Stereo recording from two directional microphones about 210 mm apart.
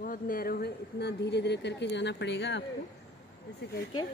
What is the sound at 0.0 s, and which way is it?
Speech, 40° left (ahead or behind).